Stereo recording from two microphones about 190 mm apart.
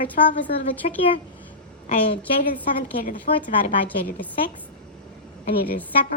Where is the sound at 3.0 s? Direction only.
45° left (ahead or behind).